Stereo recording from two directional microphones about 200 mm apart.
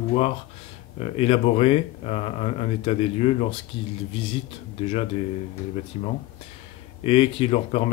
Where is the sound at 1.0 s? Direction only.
30° left (ahead or behind).